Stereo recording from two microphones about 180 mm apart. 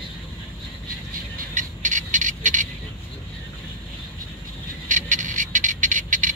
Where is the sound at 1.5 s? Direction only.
45° right (ahead or behind).